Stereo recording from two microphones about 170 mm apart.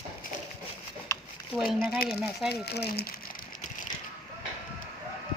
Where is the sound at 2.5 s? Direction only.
70° left (ahead or behind).